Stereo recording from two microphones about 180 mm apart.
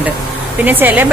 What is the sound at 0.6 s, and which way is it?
Speech, 10° right (ahead or behind).